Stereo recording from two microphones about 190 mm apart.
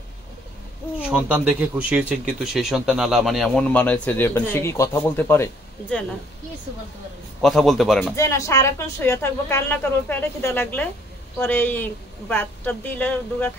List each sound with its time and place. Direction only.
0.9 s speech: 5° right (ahead or behind); by 6.0 s 10° left (ahead or behind)
7.4 s speech: centre (ahead or behind)
8.2 s speech: 15° left (ahead or behind)